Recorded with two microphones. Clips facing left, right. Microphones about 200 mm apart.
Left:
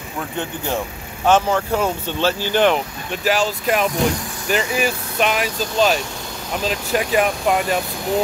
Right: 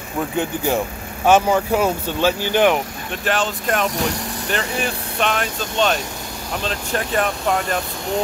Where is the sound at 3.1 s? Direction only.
Centre (ahead or behind).